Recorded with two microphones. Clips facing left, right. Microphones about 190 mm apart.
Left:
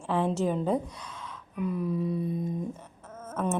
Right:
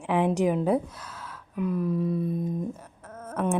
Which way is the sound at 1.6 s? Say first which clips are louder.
Right 3 dB; centre (ahead or behind).